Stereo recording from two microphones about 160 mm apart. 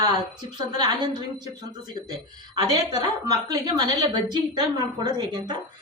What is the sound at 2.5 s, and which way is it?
A woman's voice, 25° right (ahead or behind).